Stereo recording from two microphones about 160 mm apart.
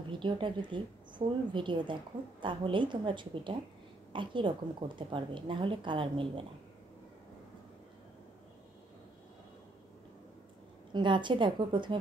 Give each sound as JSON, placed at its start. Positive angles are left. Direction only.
{"t": 0.1, "sound": "a woman's voice", "side_deg": -30}
{"t": 10.9, "sound": "a woman's voice", "side_deg": -30}